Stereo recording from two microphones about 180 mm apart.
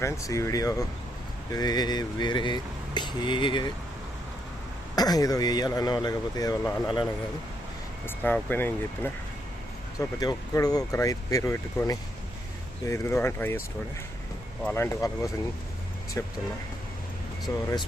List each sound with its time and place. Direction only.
0.0 s speech: 15° left (ahead or behind)
4.9 s speech: 20° left (ahead or behind)
8.0 s speech: 10° left (ahead or behind)
10.0 s speech: 20° left (ahead or behind)
14.6 s speech: 15° left (ahead or behind)
17.5 s speech: 20° left (ahead or behind)